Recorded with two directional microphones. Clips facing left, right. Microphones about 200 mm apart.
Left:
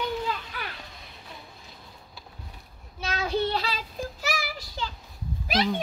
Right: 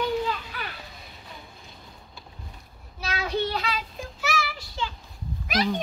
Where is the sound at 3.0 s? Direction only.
25° left (ahead or behind).